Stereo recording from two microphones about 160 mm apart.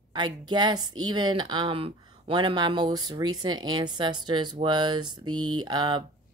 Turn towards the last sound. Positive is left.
turn(degrees=-25)  # may be behind; listen again after turning